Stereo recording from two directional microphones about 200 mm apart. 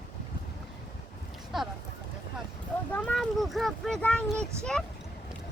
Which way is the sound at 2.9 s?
5° left (ahead or behind).